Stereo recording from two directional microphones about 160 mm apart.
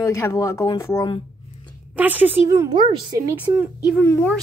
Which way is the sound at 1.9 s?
10° right (ahead or behind).